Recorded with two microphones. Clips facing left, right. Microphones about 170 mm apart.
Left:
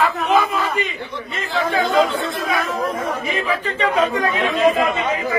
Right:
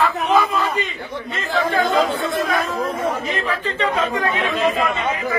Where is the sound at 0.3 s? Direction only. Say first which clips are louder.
Right 1 dB; 15° left (ahead or behind).